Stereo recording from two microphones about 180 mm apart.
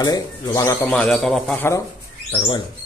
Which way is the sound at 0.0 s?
20° left (ahead or behind).